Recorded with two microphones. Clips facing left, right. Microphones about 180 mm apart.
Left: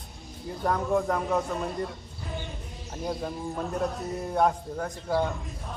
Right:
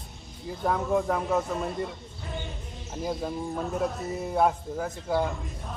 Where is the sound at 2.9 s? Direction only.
Centre (ahead or behind).